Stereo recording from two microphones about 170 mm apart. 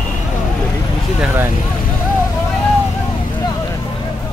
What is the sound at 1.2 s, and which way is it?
Speech, 15° right (ahead or behind).